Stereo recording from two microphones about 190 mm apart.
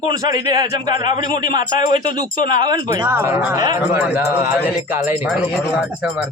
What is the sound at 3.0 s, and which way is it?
Speech, 15° right (ahead or behind).